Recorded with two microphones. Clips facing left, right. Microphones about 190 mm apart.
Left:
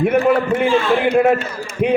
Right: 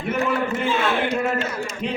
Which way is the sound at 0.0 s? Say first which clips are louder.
Left 8 dB; 60° left (ahead or behind).